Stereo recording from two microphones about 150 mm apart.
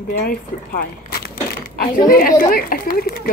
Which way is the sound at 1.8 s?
80° left.